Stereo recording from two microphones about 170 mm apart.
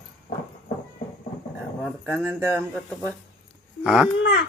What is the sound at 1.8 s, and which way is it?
A woman's voice, 10° left (ahead or behind).